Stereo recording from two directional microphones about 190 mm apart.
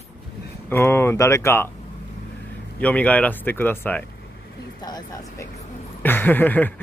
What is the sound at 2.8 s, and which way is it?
Speech, 5° left (ahead or behind).